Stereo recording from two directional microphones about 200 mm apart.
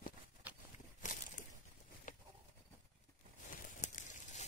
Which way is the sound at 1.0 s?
40° left (ahead or behind).